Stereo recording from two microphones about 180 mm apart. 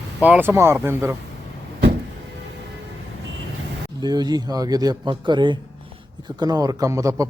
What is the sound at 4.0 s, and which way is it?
A man's voice, 20° right (ahead or behind).